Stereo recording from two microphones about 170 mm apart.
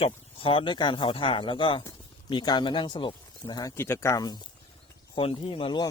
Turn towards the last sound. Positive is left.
turn(degrees=30)  # may be behind; listen again after turning